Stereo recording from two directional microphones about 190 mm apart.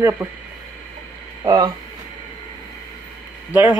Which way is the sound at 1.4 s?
20° right (ahead or behind).